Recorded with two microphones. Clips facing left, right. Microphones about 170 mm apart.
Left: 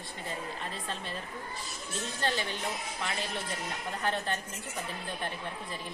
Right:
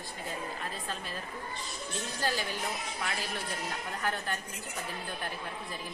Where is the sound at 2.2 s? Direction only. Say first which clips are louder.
Left 1 dB; 5° right (ahead or behind).